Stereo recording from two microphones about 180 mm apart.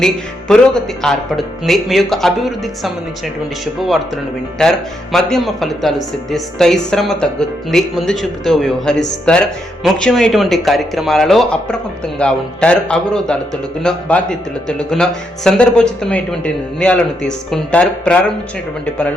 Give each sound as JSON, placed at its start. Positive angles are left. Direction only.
{"t": 0.0, "sound": "a man's voice", "side_deg": 5}
{"t": 5.1, "sound": "a man's voice", "side_deg": 0}